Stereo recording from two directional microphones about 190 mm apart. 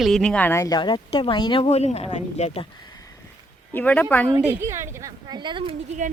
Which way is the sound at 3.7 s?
10° left (ahead or behind).